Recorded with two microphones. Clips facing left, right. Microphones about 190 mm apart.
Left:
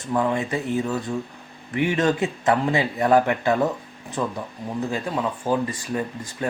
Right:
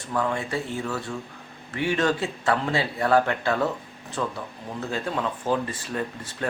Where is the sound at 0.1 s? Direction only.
20° left (ahead or behind).